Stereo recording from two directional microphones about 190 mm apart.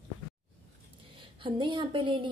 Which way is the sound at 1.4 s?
25° right (ahead or behind).